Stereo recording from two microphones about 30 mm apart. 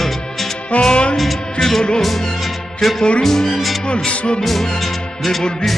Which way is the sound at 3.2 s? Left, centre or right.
Centre.